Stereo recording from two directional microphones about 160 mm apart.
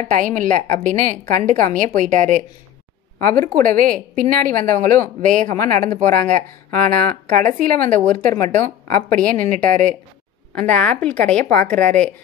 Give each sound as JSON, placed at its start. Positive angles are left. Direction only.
{"t": 0.1, "sound": "speech", "side_deg": -55}
{"t": 9.2, "sound": "a woman's voice", "side_deg": 5}
{"t": 9.5, "sound": "speech", "side_deg": -55}
{"t": 10.5, "sound": "a woman's voice", "side_deg": 10}